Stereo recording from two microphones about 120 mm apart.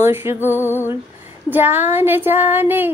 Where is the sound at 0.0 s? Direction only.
20° right (ahead or behind).